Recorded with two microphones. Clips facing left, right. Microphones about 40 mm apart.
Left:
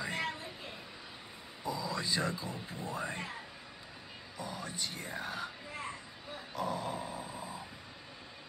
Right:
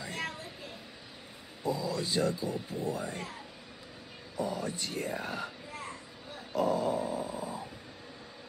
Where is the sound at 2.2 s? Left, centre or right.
Left.